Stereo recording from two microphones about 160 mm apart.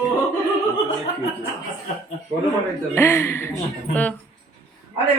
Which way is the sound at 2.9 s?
15° left (ahead or behind).